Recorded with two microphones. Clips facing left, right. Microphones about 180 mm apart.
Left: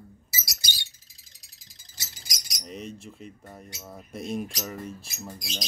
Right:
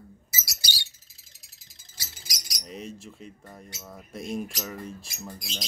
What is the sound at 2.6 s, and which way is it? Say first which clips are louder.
Speech: left 1 dB; centre (ahead or behind).